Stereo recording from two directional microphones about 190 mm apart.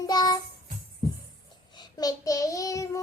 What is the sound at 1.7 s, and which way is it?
Child singing, 20° left (ahead or behind).